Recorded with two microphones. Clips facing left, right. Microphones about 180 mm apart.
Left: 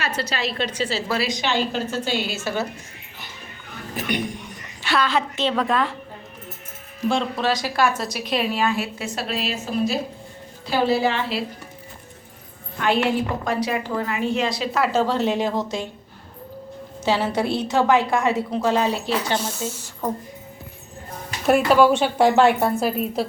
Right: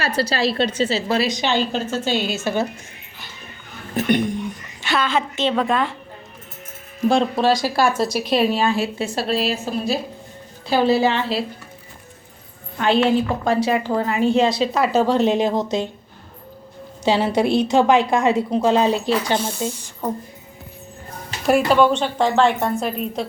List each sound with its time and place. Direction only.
0.0 s a woman's voice: 35° right (ahead or behind)
4.8 s a woman's voice: centre (ahead or behind)
7.1 s a woman's voice: 35° right (ahead or behind)
12.8 s a woman's voice: 25° right (ahead or behind)
17.0 s a woman's voice: 15° right (ahead or behind)
19.8 s a woman's voice: centre (ahead or behind)
21.4 s a woman's voice: centre (ahead or behind)